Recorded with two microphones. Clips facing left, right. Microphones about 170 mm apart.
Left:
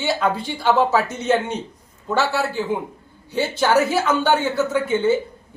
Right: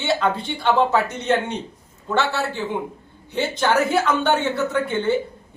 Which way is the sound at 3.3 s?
5° left (ahead or behind).